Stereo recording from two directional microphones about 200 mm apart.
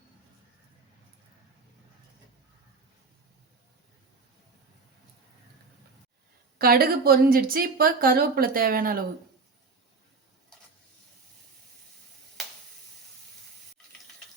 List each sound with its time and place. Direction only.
6.6 s speech: 50° right (ahead or behind)